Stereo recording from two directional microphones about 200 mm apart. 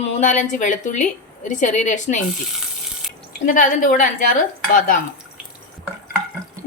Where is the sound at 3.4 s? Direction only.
40° left (ahead or behind).